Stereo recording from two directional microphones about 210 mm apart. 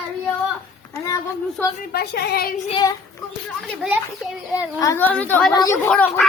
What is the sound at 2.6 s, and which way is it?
Child singing, 25° left (ahead or behind).